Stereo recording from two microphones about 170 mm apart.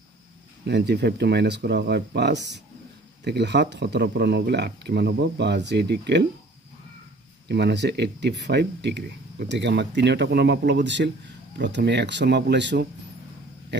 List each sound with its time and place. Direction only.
0.7 s speech: 85° right
7.4 s speech: 85° right